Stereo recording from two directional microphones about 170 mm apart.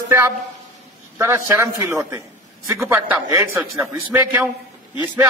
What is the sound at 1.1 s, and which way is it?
A man's voice, 15° right (ahead or behind).